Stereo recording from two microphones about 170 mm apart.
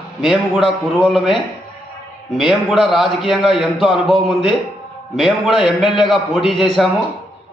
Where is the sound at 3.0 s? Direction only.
30° left (ahead or behind).